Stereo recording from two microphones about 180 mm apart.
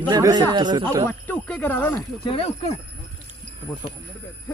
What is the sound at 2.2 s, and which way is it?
Speech, 30° left (ahead or behind).